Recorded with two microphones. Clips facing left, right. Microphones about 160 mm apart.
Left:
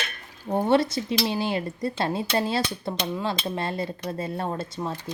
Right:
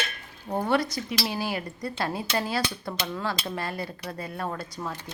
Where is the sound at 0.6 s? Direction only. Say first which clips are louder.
Left 4 dB; 25° left (ahead or behind).